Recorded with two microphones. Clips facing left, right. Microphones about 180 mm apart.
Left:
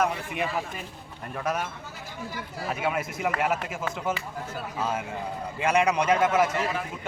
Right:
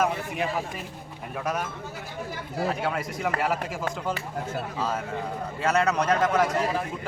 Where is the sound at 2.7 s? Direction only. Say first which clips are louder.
Even; 5° left (ahead or behind).